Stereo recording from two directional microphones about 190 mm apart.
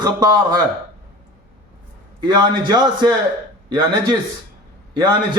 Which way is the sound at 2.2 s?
20° right (ahead or behind).